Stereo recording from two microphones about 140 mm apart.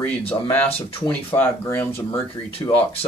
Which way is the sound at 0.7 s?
40° left (ahead or behind).